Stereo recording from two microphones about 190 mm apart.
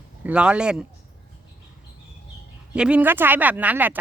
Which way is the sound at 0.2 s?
5° right (ahead or behind).